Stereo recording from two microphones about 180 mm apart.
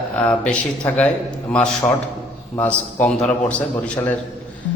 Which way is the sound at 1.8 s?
15° left (ahead or behind).